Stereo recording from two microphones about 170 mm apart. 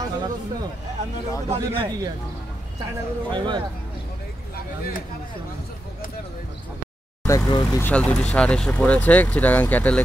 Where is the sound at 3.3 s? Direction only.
25° right (ahead or behind).